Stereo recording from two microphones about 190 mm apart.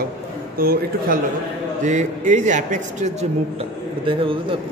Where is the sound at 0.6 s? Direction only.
50° right (ahead or behind).